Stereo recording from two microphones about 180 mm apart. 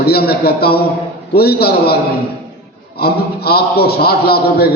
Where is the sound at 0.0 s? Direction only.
60° left (ahead or behind).